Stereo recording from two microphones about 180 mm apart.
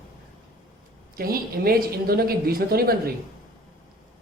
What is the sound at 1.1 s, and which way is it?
Speech, 55° right (ahead or behind).